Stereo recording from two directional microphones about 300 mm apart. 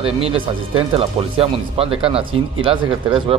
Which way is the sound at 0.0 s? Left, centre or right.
Centre.